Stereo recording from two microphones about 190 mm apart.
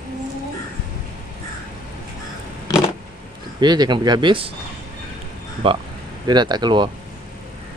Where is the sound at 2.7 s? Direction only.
20° left (ahead or behind).